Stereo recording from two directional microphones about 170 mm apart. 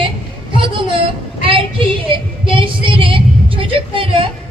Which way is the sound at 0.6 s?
30° right (ahead or behind).